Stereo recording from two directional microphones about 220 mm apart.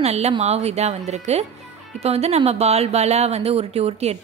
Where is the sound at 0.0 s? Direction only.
30° right (ahead or behind).